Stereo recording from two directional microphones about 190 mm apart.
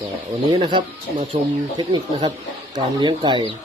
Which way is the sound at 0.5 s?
25° right (ahead or behind).